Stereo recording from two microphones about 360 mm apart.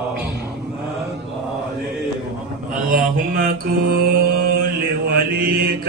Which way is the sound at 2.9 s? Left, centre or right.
Right.